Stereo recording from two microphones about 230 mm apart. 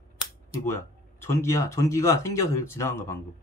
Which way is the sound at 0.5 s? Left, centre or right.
Centre.